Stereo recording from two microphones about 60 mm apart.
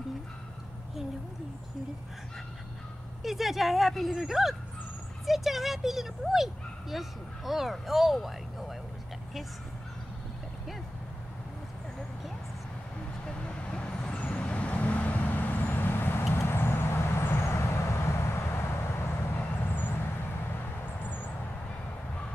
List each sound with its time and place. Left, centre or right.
3.2 s speech: centre
13.3 s vehicle: centre; by 18.7 s left
19.3 s vehicle: left